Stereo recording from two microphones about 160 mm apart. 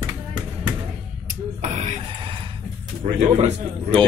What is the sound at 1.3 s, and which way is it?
Speech, 45° right (ahead or behind).